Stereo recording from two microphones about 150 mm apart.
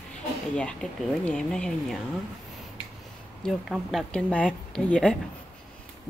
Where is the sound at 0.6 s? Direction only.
5° left (ahead or behind).